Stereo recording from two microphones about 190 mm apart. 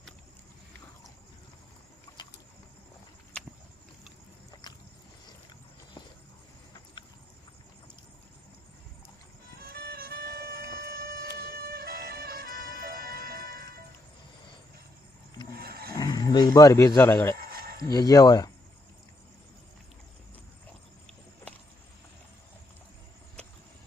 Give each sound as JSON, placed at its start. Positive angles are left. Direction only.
{"t": 4.6, "sound": "boat", "side_deg": 20}
{"t": 9.6, "sound": "music", "side_deg": -50}
{"t": 15.5, "sound": "roaring cats", "side_deg": -50}
{"t": 16.0, "sound": "speech", "side_deg": 20}
{"t": 17.3, "sound": "a sound", "side_deg": -50}
{"t": 17.9, "sound": "speech", "side_deg": 20}